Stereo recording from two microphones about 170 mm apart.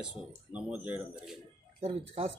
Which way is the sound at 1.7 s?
35° right (ahead or behind).